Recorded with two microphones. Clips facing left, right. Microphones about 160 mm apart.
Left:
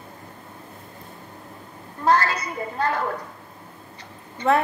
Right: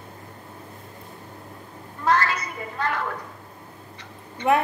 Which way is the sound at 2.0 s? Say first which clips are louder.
Left 2 dB; 35° left (ahead or behind).